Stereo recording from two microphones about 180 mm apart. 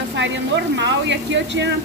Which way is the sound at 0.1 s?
85° right.